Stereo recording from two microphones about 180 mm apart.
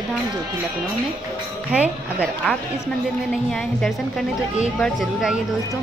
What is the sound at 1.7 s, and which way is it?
Speech, 5° right (ahead or behind).